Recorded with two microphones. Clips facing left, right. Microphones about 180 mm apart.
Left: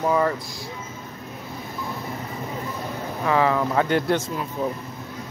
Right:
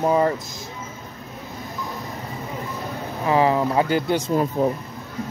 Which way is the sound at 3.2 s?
20° right (ahead or behind).